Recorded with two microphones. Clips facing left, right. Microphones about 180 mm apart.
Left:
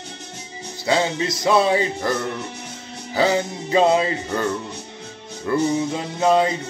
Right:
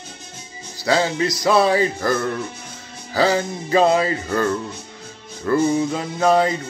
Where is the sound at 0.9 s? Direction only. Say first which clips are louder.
Right 2 dB; 20° left (ahead or behind).